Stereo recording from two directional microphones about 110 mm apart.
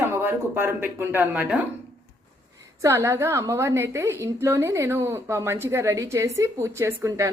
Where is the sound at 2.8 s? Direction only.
25° right (ahead or behind).